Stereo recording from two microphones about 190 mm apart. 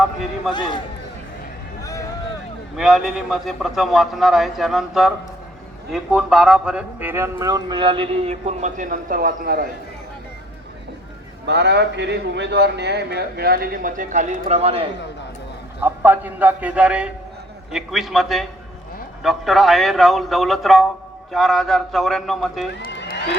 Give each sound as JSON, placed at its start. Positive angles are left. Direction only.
{"t": 0.5, "sound": "a man's voice", "side_deg": 25}
{"t": 1.8, "sound": "a sound", "side_deg": 15}
{"t": 2.7, "sound": "a man's voice", "side_deg": 0}
{"t": 11.4, "sound": "a man's voice", "side_deg": -65}
{"t": 15.8, "sound": "a man's voice", "side_deg": -10}
{"t": 22.7, "sound": "run", "side_deg": 65}